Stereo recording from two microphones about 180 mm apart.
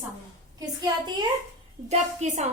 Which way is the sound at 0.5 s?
25° right (ahead or behind).